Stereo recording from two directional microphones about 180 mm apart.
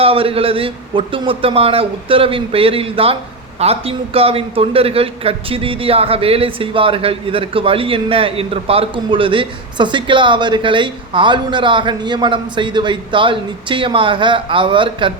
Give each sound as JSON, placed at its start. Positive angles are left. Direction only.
{"t": 0.0, "sound": "a man's voice", "side_deg": -30}